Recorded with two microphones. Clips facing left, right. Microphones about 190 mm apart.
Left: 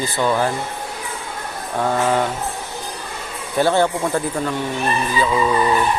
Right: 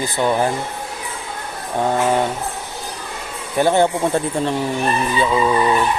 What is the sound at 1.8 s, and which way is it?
Speech, 20° right (ahead or behind).